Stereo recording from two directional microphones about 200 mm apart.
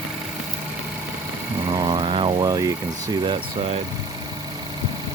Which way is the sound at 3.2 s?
25° right (ahead or behind).